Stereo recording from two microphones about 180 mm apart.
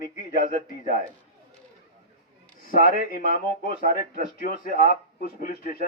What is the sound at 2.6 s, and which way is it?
A man's voice, 55° left (ahead or behind).